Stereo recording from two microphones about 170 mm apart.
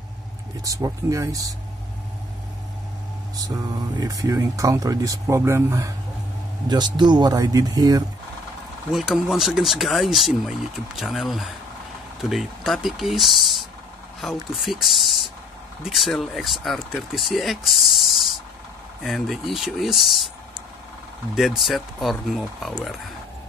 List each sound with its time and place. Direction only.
0.7 s speech: 20° right (ahead or behind)
4.0 s speech: 20° right (ahead or behind)
8.9 s speech: centre (ahead or behind)
21.4 s speech: centre (ahead or behind)